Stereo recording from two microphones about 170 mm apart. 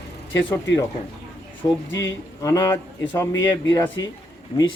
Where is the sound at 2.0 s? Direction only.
20° left (ahead or behind).